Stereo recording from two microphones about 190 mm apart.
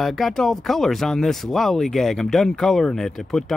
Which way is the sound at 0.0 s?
Centre (ahead or behind).